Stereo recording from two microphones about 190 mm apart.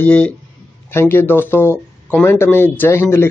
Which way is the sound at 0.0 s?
5° left (ahead or behind).